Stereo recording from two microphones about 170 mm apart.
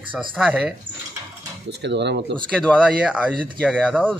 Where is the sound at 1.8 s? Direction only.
90° right.